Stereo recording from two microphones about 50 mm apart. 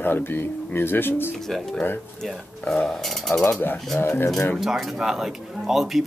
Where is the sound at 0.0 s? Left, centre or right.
Left.